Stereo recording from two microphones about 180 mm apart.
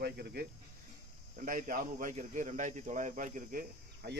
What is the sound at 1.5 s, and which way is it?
Speech, 50° right (ahead or behind).